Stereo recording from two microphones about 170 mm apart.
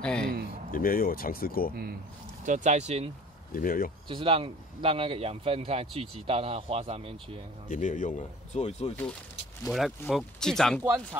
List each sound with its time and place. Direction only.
0.0 s speech: 5° left (ahead or behind)
0.7 s speech: 60° left (ahead or behind)
2.4 s speech: 45° right (ahead or behind)
3.5 s speech: 55° left (ahead or behind)
4.1 s speech: 30° right (ahead or behind)
7.6 s speech: 50° left (ahead or behind)
9.7 s speech: centre (ahead or behind)